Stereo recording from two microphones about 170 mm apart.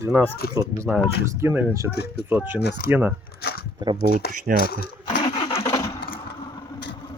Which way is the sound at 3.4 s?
70° left (ahead or behind).